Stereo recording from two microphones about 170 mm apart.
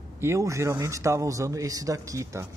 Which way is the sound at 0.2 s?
15° right (ahead or behind).